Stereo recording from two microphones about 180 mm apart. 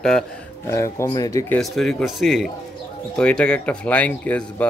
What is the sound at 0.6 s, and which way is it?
Speech, 15° left (ahead or behind).